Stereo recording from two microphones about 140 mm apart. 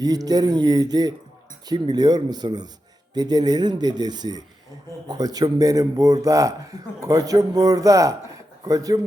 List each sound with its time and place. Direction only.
0.0 s speech: 25° right (ahead or behind)